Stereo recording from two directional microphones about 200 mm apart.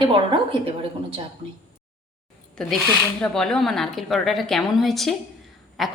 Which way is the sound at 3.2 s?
5° left (ahead or behind).